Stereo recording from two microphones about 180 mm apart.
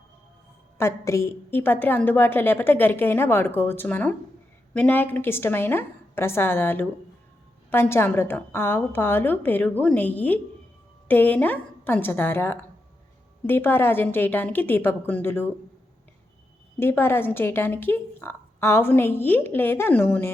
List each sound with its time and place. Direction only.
0.8 s speech: 15° left (ahead or behind)
16.8 s speech: 10° left (ahead or behind)